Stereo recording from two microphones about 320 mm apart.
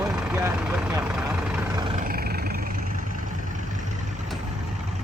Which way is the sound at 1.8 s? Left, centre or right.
Centre.